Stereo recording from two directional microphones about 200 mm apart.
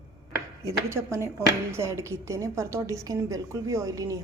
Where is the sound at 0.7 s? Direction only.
15° right (ahead or behind).